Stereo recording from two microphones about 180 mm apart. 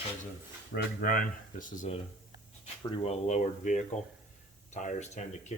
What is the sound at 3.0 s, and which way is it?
Speech, 35° left (ahead or behind).